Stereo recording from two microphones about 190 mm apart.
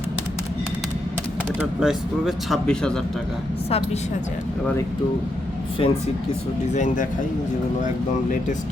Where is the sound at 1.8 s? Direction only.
Centre (ahead or behind).